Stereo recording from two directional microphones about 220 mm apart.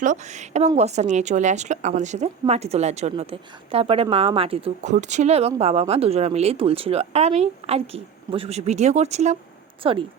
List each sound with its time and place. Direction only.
0.0 s a woman's voice: 35° right (ahead or behind)